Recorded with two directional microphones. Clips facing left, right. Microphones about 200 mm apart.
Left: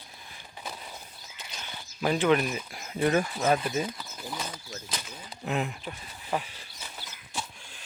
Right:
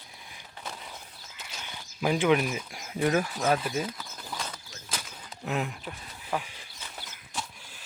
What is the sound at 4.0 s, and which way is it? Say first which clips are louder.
Bird: left 2 dB; 10° left (ahead or behind).